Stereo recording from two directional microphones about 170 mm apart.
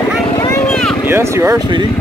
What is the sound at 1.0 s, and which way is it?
Speech, 15° right (ahead or behind).